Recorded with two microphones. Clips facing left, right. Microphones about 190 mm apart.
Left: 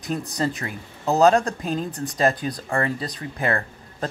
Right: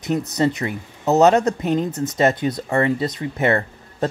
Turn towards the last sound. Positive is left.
turn(degrees=-25)  # may be behind; listen again after turning